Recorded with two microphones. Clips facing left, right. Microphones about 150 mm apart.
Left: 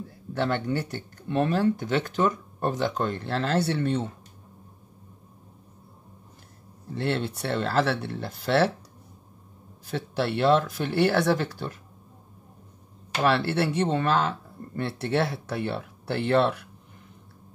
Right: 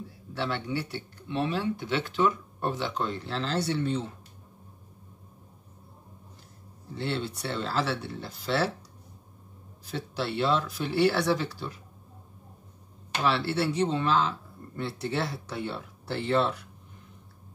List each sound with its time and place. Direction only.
0.3 s speech: 45° left (ahead or behind)
7.0 s speech: 55° left (ahead or behind)
9.8 s speech: 55° left (ahead or behind)
13.2 s speech: 55° left (ahead or behind)